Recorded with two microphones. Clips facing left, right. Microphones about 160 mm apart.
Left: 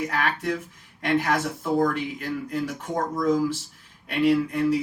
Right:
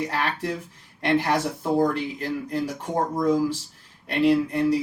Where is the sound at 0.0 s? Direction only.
35° right (ahead or behind).